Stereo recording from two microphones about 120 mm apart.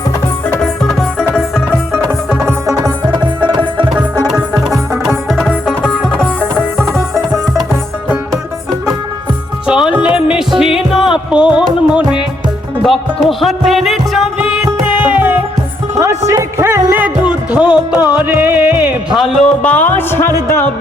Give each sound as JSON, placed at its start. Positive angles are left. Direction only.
{"t": 0.6, "sound": "music", "side_deg": 0}
{"t": 4.7, "sound": "music", "side_deg": 0}
{"t": 6.9, "sound": "music", "side_deg": 0}
{"t": 7.7, "sound": "music", "side_deg": -20}
{"t": 9.6, "sound": "music", "side_deg": -5}
{"t": 16.0, "sound": "music", "side_deg": -25}
{"t": 19.6, "sound": "music", "side_deg": 10}